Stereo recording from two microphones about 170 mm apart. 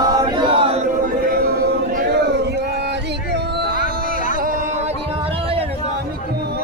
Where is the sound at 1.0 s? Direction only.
60° right (ahead or behind).